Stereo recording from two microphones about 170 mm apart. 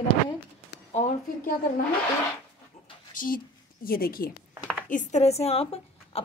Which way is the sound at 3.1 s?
55° left (ahead or behind).